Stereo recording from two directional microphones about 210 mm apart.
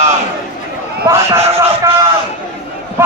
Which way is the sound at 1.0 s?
15° right (ahead or behind).